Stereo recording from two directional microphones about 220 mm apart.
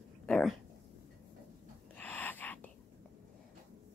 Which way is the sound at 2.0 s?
10° left (ahead or behind).